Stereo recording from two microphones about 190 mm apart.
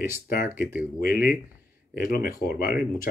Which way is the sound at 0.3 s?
50° left (ahead or behind).